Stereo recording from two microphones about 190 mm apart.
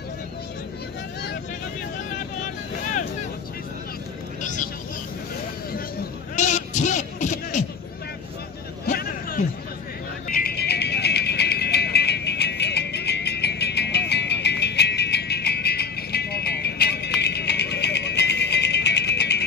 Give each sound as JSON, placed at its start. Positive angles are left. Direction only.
{"t": 4.4, "sound": "vehicle", "side_deg": 40}
{"t": 6.3, "sound": "music", "side_deg": 40}
{"t": 8.8, "sound": "hubbub", "side_deg": 50}
{"t": 10.2, "sound": "music", "side_deg": 50}